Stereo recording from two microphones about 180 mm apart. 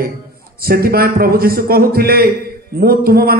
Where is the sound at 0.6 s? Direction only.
55° right (ahead or behind).